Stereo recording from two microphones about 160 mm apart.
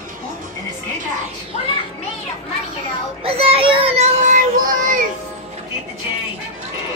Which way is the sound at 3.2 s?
35° right (ahead or behind).